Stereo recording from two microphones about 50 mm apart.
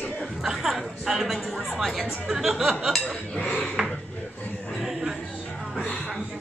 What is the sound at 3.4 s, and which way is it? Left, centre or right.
Dishes, centre.